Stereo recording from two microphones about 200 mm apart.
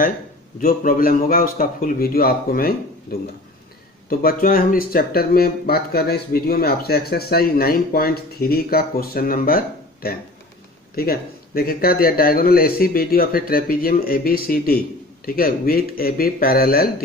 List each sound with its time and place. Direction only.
0.6 s speech: 45° left (ahead or behind)